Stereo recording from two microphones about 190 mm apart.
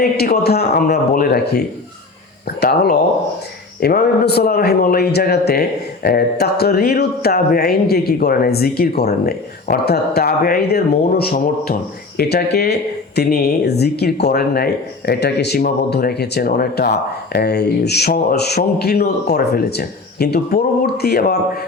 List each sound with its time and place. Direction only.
0.0 s a man's voice: 55° left (ahead or behind)